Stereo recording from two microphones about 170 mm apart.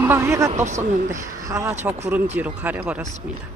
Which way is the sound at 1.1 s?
20° right (ahead or behind).